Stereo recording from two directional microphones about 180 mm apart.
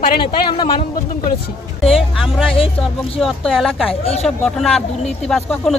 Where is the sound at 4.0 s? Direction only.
35° left (ahead or behind).